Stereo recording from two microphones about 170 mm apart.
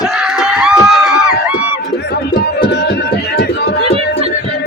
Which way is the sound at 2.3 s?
80° left.